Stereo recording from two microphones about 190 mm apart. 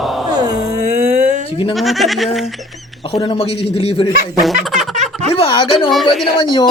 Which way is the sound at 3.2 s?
30° left (ahead or behind).